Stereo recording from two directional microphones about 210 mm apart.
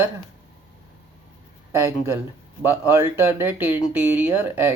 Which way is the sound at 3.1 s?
10° right (ahead or behind).